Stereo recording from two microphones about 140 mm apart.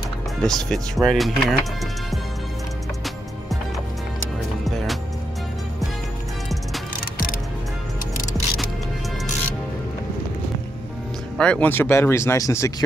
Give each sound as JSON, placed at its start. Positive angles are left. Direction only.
{"t": 0.4, "sound": "speech", "side_deg": 5}
{"t": 11.3, "sound": "speech", "side_deg": 10}